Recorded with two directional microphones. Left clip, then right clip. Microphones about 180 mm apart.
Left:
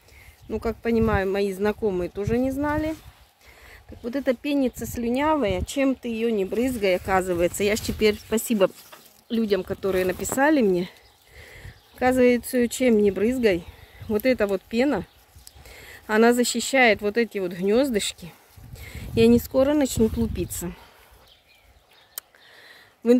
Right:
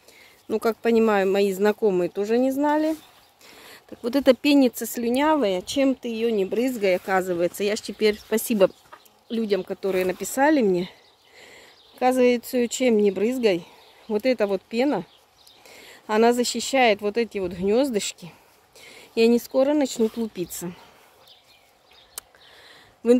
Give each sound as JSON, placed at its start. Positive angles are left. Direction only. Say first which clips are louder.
{"t": 0.5, "sound": "speech", "louder": "right 4 dB", "side_deg": -35}
{"t": 3.4, "sound": "speech", "louder": "right 3 dB", "side_deg": -30}
{"t": 7.1, "sound": "speech", "louder": "left 1 dB", "side_deg": 10}
{"t": 9.3, "sound": "speech", "louder": "left 1 dB", "side_deg": 5}
{"t": 22.1, "sound": "a sound", "louder": "even", "side_deg": -5}